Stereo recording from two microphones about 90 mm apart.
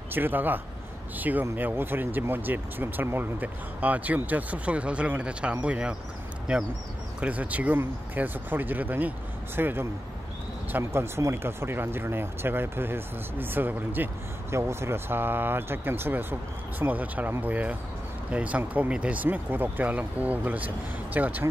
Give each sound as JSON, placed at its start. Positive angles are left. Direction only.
{"t": 0.1, "sound": "speech", "side_deg": -20}